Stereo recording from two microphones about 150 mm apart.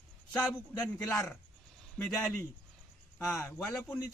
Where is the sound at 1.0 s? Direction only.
5° left (ahead or behind).